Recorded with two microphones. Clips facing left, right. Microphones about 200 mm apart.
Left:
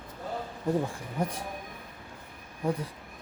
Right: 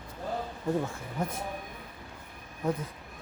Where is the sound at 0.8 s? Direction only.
15° left (ahead or behind).